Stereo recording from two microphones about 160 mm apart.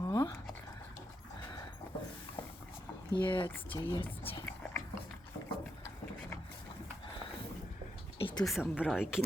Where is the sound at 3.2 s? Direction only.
30° left (ahead or behind).